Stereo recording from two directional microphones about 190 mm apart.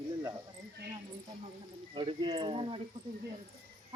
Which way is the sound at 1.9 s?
25° right (ahead or behind).